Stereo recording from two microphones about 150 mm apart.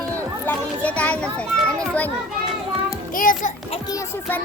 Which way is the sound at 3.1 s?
65° left (ahead or behind).